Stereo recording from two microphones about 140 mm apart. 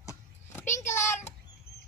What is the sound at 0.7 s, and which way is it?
Child singing, 60° left (ahead or behind).